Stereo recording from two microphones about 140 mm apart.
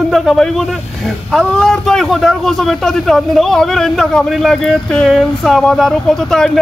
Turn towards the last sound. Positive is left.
turn(degrees=5)  # may be behind; listen again after turning